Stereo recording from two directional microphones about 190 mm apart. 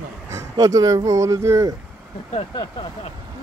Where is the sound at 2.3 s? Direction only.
30° left (ahead or behind).